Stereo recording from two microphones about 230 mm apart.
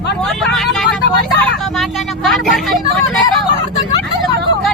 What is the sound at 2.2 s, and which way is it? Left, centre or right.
Vehicle, centre.